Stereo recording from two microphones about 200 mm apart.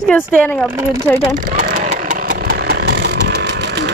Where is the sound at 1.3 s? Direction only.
45° right (ahead or behind); by 3.8 s 60° right (ahead or behind).